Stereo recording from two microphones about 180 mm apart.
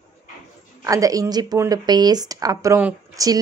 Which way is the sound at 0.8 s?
20° right (ahead or behind).